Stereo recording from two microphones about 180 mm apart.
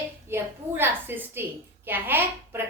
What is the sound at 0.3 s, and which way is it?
A woman's voice, 10° right (ahead or behind).